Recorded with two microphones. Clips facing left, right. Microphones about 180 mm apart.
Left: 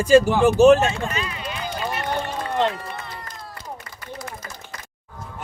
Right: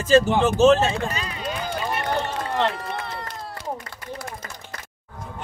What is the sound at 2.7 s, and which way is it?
Run, 75° right (ahead or behind).